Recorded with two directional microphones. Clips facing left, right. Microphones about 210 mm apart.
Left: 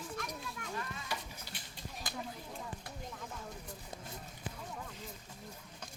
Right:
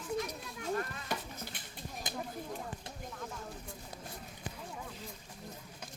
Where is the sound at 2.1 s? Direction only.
20° right (ahead or behind).